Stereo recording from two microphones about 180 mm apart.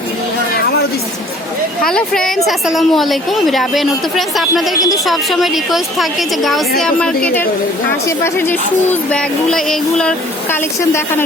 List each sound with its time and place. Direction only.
0.5 s a sound: 60° left (ahead or behind)
1.8 s a woman's voice: 5° left (ahead or behind)
8.0 s a woman's voice: 15° left (ahead or behind)